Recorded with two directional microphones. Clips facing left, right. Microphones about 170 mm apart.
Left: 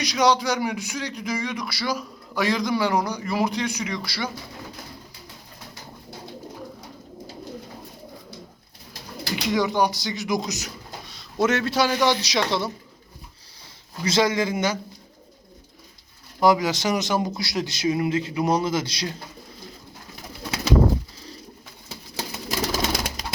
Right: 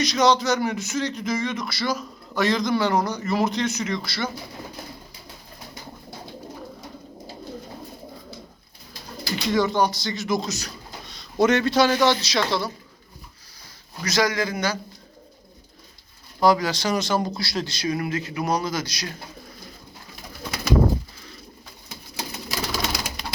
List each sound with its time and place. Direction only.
0.0 s speech: 10° left (ahead or behind)
9.3 s speech: 15° left (ahead or behind)
11.1 s speech: 5° left (ahead or behind); by 12.7 s 20° left (ahead or behind)
14.0 s speech: 25° left (ahead or behind)
16.4 s speech: 20° left (ahead or behind)
22.4 s bird: 50° left (ahead or behind)